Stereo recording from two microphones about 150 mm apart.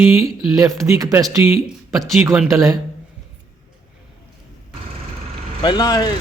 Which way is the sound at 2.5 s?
20° right (ahead or behind).